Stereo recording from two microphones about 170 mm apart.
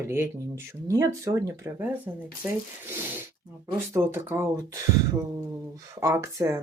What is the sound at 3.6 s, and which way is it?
Speech, 15° right (ahead or behind).